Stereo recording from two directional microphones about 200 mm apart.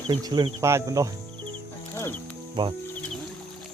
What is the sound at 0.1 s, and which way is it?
Speech, 20° right (ahead or behind).